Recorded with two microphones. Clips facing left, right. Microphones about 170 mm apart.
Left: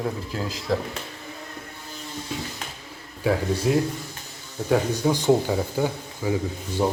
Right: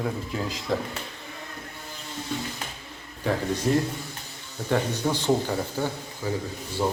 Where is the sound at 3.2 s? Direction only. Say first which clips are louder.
Left 3 dB; 10° left (ahead or behind).